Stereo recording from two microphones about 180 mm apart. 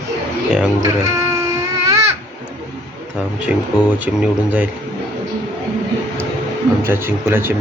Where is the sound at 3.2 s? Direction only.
5° right (ahead or behind).